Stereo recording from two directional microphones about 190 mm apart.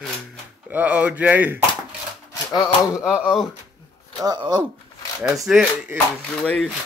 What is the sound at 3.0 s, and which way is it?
Speech, 5° right (ahead or behind).